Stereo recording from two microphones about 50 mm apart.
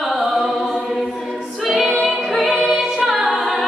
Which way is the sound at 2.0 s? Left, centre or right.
Centre.